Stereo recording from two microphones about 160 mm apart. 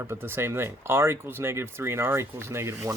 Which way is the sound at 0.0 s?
15° right (ahead or behind).